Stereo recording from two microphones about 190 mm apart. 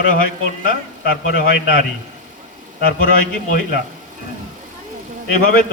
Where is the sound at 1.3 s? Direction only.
50° left (ahead or behind).